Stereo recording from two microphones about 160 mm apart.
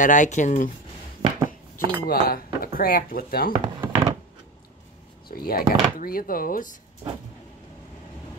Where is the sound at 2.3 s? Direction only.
65° left (ahead or behind).